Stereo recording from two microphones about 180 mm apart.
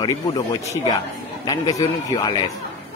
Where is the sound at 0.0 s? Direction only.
20° left (ahead or behind).